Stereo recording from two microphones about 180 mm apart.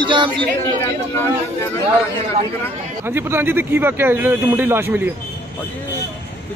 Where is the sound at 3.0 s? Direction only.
15° right (ahead or behind).